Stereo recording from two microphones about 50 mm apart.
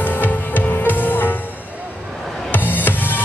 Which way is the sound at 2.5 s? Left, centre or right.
Left.